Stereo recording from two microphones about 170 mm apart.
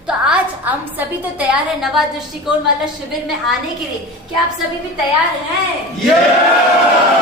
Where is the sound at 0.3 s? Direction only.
10° right (ahead or behind).